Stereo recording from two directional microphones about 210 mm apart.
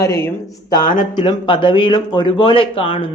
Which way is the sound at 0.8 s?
40° left (ahead or behind).